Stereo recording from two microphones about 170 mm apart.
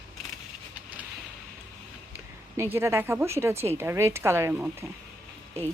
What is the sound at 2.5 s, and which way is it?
A woman's voice, 15° right (ahead or behind).